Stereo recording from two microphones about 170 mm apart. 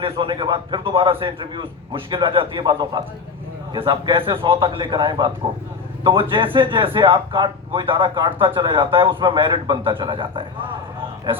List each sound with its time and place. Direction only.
0.0 s speech: 30° right (ahead or behind)